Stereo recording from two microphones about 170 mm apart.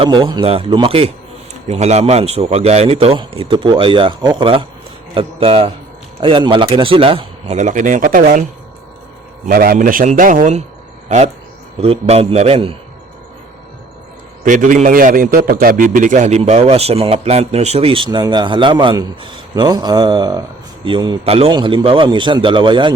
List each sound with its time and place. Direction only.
0.0 s a man's voice: 30° right (ahead or behind); by 8.4 s 50° right (ahead or behind)
9.5 s a man's voice: 55° right (ahead or behind)
11.8 s a man's voice: 35° right (ahead or behind)
14.4 s a man's voice: 50° right (ahead or behind); by 22.9 s 30° right (ahead or behind)